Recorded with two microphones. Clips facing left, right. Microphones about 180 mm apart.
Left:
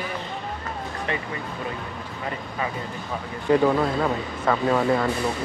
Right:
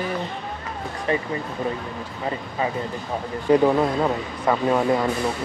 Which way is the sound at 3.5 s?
20° right (ahead or behind).